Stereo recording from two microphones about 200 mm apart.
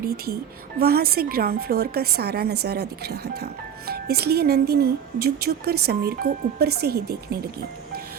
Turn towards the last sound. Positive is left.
turn(degrees=-50)  # may be behind; listen again after turning